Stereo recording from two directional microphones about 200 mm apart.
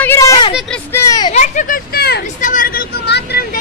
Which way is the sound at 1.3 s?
40° left (ahead or behind).